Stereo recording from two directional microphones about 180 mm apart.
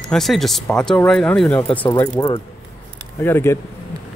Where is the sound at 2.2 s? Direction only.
20° left (ahead or behind).